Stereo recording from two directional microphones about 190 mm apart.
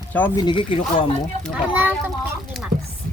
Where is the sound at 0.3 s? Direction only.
25° left (ahead or behind).